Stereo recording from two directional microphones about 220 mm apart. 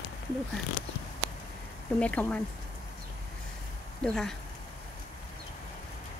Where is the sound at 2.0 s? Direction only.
5° left (ahead or behind).